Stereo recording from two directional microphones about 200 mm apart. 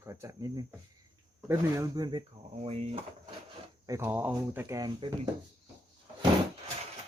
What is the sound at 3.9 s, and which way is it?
Speech, 15° right (ahead or behind).